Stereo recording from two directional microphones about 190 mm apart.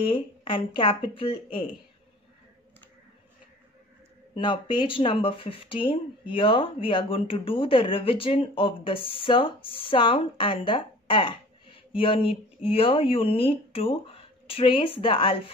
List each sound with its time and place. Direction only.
0.0 s a woman's voice: 30° left (ahead or behind)
4.4 s speech: 25° left (ahead or behind)